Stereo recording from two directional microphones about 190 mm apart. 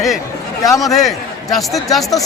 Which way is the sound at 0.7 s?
20° left (ahead or behind).